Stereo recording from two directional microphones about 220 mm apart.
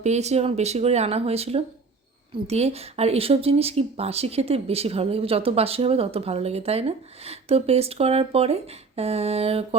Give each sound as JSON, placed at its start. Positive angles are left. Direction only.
{"t": 0.0, "sound": "a woman's voice", "side_deg": -30}